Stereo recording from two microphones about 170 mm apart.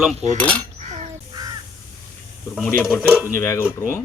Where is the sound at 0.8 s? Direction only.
45° right (ahead or behind).